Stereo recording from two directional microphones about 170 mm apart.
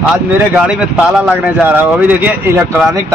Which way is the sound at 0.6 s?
5° right (ahead or behind).